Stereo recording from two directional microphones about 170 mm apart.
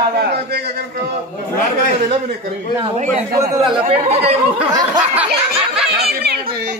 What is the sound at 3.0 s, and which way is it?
Speech, 45° right (ahead or behind).